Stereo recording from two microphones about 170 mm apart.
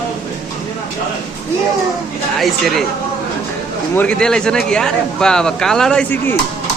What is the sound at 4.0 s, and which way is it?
Speech, 5° left (ahead or behind).